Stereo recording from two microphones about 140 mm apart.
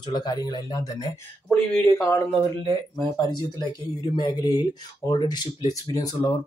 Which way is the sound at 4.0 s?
30° left (ahead or behind).